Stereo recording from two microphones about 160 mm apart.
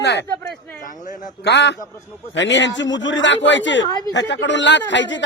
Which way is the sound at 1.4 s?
90° left.